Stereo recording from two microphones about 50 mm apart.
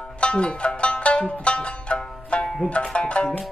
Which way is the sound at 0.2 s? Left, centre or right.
Left.